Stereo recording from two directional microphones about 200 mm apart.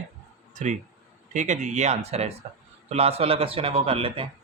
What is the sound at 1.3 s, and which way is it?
Speech, 40° right (ahead or behind).